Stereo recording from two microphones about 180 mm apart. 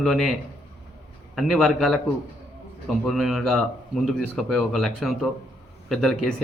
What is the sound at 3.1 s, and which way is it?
A man's voice, centre (ahead or behind).